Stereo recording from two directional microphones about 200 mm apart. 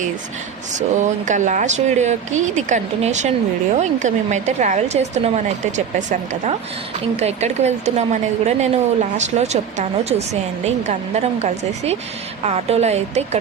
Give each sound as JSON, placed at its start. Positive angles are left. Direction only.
{"t": 0.7, "sound": "a woman's voice", "side_deg": -40}